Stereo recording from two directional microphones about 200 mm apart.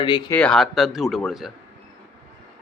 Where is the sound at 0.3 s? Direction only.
5° left (ahead or behind).